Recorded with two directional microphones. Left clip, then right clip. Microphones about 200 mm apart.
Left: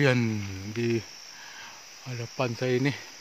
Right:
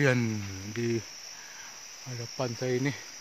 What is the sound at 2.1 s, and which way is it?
Speech, 35° left (ahead or behind).